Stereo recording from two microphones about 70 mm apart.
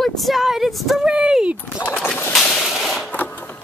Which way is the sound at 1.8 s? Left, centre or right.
Left.